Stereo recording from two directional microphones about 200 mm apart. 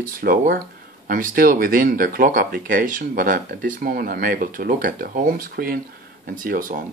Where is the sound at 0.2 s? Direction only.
45° right (ahead or behind).